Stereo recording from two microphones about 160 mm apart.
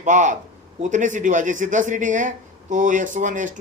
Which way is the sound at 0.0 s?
50° right (ahead or behind).